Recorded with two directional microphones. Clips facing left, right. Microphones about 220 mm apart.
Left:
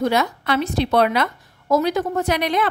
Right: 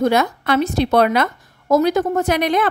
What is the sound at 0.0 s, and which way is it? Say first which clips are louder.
A woman's voice: right 3 dB; 50° right (ahead or behind).